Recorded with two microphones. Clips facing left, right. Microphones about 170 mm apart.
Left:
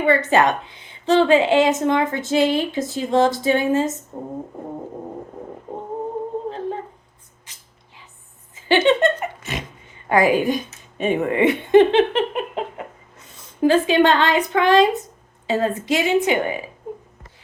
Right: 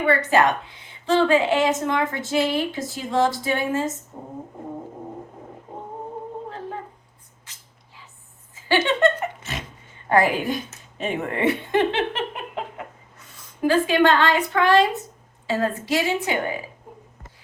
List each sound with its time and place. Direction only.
0.0 s a woman's voice: 20° left (ahead or behind)
8.6 s a sound: 20° left (ahead or behind)
10.1 s a woman's voice: 15° left (ahead or behind)